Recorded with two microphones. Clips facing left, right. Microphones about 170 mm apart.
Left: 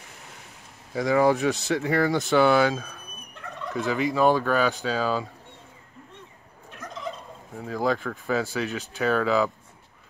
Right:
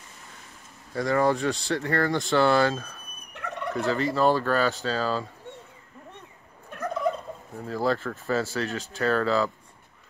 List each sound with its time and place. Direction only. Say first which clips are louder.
0.9 s speech: left 2 dB; 10° left (ahead or behind)
3.3 s fowl: right 4 dB; 75° right (ahead or behind)
3.7 s speech: even; centre (ahead or behind)
4.0 s speech: left 3 dB; 15° left (ahead or behind)
6.7 s fowl: right 8 dB; 55° right (ahead or behind)
7.5 s speech: left 1 dB; centre (ahead or behind)